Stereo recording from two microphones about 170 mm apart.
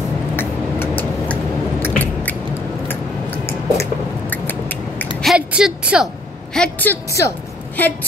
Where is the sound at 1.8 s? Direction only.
10° left (ahead or behind).